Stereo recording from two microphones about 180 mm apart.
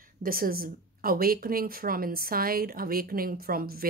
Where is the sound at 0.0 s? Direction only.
50° right (ahead or behind).